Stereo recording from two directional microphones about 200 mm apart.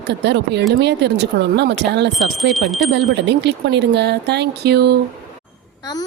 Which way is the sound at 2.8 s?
60° right (ahead or behind).